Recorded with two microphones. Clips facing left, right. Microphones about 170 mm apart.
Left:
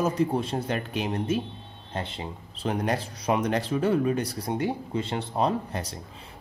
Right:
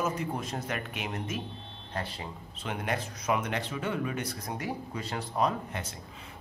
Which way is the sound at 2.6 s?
35° left (ahead or behind).